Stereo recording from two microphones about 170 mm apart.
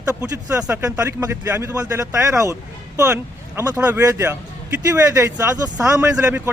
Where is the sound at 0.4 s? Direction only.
15° right (ahead or behind).